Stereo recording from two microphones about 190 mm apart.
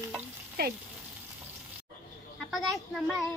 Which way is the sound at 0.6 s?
55° right (ahead or behind).